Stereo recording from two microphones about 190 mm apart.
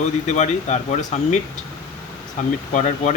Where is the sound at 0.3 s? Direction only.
35° left (ahead or behind).